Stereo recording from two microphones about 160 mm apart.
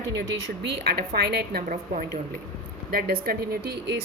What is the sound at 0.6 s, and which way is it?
A woman's voice, 80° right.